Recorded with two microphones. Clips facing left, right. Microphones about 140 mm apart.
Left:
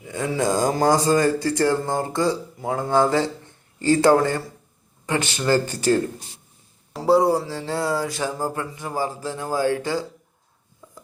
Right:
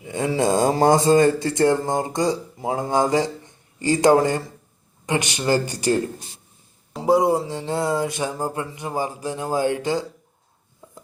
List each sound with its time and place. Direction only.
0.0 s speech: 25° right (ahead or behind)
7.0 s speech: 20° right (ahead or behind)